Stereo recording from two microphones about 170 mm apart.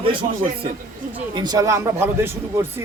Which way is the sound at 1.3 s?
25° right (ahead or behind).